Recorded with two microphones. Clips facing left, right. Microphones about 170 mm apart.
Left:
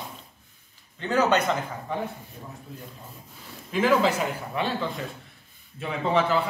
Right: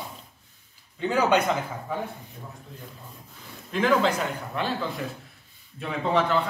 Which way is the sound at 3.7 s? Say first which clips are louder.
Left 1 dB; 5° left (ahead or behind).